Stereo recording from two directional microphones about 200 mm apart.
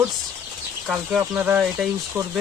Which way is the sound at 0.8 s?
5° right (ahead or behind).